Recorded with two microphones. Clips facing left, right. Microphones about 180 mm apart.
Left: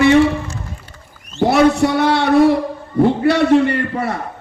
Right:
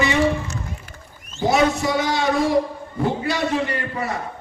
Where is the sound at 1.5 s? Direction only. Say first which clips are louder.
Left 5 dB; 65° left (ahead or behind).